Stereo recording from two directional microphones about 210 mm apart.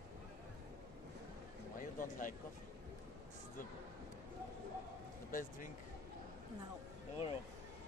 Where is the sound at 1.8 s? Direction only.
40° left (ahead or behind).